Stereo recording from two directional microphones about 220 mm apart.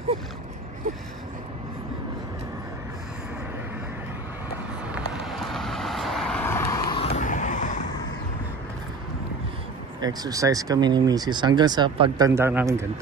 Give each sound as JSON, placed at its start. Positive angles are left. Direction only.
{"t": 4.9, "sound": "vehicle", "side_deg": 0}
{"t": 7.0, "sound": "vehicle", "side_deg": 30}
{"t": 9.9, "sound": "speech", "side_deg": -15}